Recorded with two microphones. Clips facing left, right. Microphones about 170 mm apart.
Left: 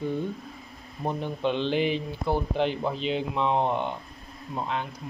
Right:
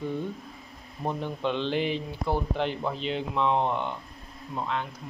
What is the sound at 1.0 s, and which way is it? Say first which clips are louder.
Speech: left 2 dB; 5° left (ahead or behind).